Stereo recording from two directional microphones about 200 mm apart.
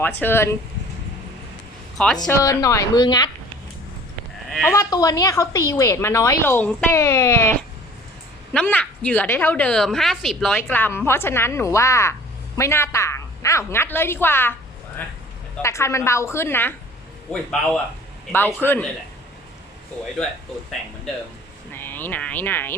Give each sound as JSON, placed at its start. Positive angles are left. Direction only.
{"t": 0.0, "sound": "a woman's voice", "side_deg": 10}
{"t": 2.2, "sound": "a woman's voice", "side_deg": 15}
{"t": 4.4, "sound": "a sound", "side_deg": 0}
{"t": 4.7, "sound": "a woman's voice", "side_deg": 15}
{"t": 8.5, "sound": "a woman's voice", "side_deg": 5}
{"t": 15.6, "sound": "a woman's voice", "side_deg": 15}
{"t": 18.3, "sound": "a woman's voice", "side_deg": 10}
{"t": 21.7, "sound": "speech", "side_deg": 10}